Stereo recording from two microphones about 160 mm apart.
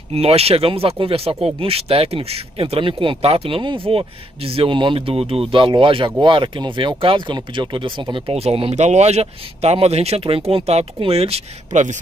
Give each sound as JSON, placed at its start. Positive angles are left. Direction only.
{"t": 0.1, "sound": "speech", "side_deg": -40}